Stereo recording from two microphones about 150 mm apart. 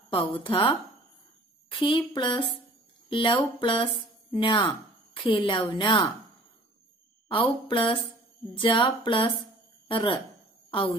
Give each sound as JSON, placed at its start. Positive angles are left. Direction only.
{"t": 0.1, "sound": "speech", "side_deg": 35}
{"t": 7.2, "sound": "speech", "side_deg": 35}